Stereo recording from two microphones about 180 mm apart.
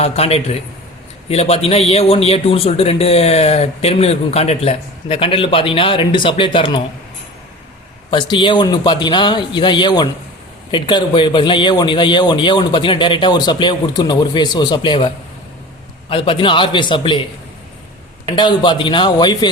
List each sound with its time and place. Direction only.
0.0 s a man's voice: 35° left (ahead or behind)
8.1 s a man's voice: 25° left (ahead or behind)
18.3 s a man's voice: 25° left (ahead or behind)